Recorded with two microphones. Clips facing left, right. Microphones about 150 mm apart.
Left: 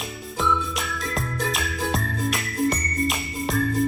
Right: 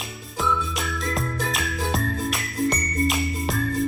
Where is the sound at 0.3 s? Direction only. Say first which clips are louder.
Even; centre (ahead or behind).